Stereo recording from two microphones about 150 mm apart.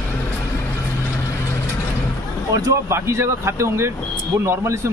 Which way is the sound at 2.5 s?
20° right (ahead or behind).